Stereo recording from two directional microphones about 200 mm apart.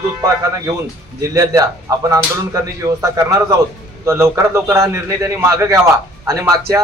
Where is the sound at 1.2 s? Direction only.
15° right (ahead or behind).